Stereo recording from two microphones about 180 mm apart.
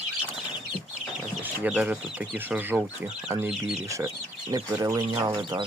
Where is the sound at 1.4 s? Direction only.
10° right (ahead or behind).